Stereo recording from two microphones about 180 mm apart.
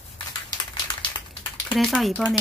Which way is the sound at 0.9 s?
25° left (ahead or behind).